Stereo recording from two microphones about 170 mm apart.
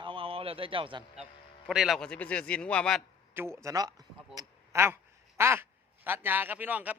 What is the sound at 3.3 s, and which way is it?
A man's voice, 15° right (ahead or behind).